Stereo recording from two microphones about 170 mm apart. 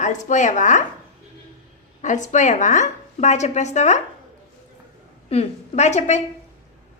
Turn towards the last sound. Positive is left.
turn(degrees=40)  # may be behind; listen again after turning